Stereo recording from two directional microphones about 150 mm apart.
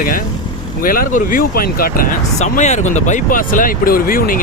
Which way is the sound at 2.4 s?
50° left (ahead or behind).